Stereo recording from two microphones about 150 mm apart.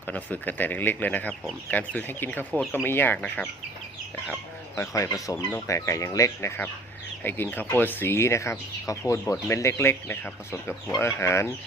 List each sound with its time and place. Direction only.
0.1 s speech: 10° left (ahead or behind)
4.8 s speech: 20° left (ahead or behind)